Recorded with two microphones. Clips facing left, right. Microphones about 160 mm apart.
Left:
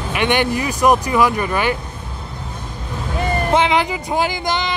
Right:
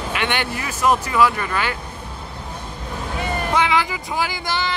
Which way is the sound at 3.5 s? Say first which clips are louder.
Left 3 dB; 20° left (ahead or behind).